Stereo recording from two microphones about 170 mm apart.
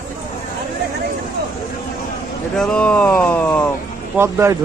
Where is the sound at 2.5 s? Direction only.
5° left (ahead or behind).